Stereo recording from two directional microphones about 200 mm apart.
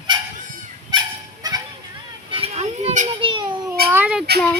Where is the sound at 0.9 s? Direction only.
20° right (ahead or behind).